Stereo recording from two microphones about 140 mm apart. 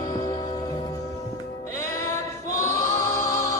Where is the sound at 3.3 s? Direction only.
25° left (ahead or behind).